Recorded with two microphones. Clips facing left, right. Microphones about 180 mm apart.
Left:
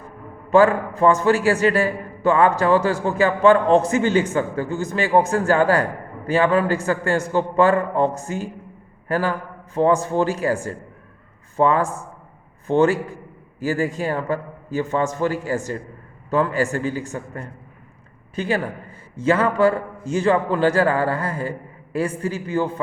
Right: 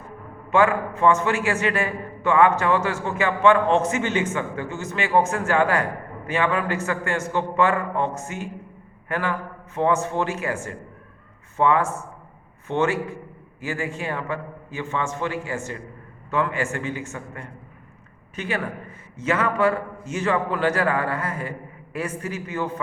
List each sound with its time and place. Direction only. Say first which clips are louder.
0.5 s a man's voice: left 4 dB; 35° left (ahead or behind)